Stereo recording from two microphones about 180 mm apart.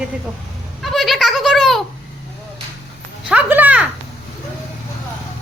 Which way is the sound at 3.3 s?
10° right (ahead or behind).